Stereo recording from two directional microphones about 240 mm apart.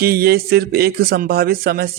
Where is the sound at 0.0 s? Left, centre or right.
Right.